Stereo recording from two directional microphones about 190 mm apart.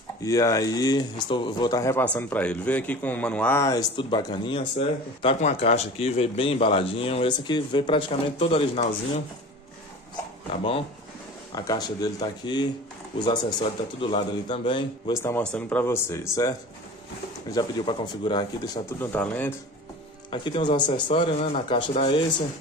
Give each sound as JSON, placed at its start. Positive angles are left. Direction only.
{"t": 0.2, "sound": "a man's voice", "side_deg": 15}
{"t": 11.5, "sound": "a man's voice", "side_deg": 20}
{"t": 15.2, "sound": "a man's voice", "side_deg": 10}
{"t": 18.9, "sound": "speech", "side_deg": 10}
{"t": 20.2, "sound": "a man's voice", "side_deg": 25}